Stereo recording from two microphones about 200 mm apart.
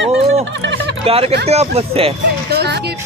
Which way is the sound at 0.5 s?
65° right (ahead or behind).